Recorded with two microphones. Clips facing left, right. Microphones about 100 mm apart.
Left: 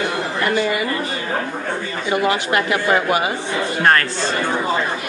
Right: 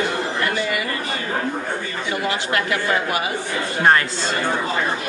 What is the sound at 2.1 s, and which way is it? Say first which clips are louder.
A woman's voice: left 5 dB; 25° left (ahead or behind).